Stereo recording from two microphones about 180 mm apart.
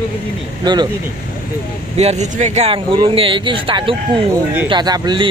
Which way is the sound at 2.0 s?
40° right (ahead or behind).